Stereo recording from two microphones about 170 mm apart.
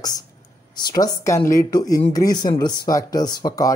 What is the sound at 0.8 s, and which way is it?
Speech, 20° left (ahead or behind).